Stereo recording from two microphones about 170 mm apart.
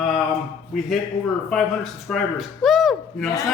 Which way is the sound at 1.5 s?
Centre (ahead or behind).